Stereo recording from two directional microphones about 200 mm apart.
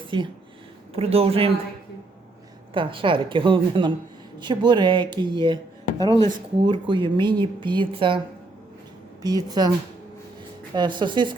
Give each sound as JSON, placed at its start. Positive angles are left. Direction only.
{"t": 0.1, "sound": "speech", "side_deg": -25}
{"t": 2.7, "sound": "speech", "side_deg": -25}
{"t": 9.2, "sound": "speech", "side_deg": -20}
{"t": 10.8, "sound": "speech", "side_deg": -25}